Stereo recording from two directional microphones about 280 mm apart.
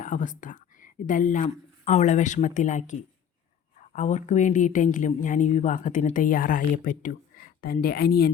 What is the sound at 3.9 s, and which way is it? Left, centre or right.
Speech, left.